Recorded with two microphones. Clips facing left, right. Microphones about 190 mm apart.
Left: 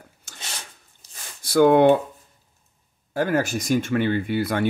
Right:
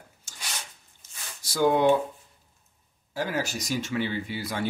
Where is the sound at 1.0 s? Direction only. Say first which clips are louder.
Left 3 dB; 35° left (ahead or behind).